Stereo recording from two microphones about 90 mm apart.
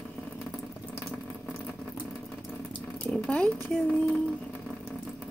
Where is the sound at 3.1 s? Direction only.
10° left (ahead or behind).